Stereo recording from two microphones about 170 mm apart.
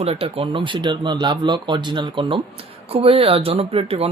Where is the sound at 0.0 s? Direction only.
35° right (ahead or behind).